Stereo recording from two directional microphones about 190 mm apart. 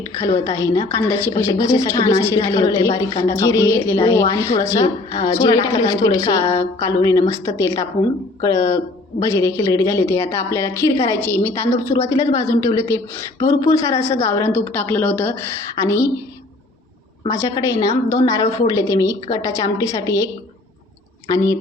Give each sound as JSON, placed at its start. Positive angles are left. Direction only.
{"t": 0.2, "sound": "a woman's voice", "side_deg": 15}
{"t": 17.4, "sound": "a woman's voice", "side_deg": 15}